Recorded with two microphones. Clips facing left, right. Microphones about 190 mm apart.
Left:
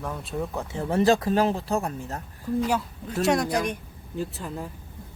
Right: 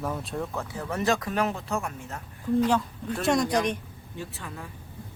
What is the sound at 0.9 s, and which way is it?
Speech, 30° left (ahead or behind).